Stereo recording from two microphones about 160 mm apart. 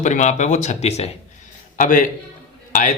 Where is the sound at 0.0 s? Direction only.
50° left (ahead or behind).